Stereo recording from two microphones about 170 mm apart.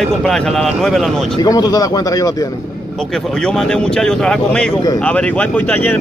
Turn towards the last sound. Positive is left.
turn(degrees=10)  # may be behind; listen again after turning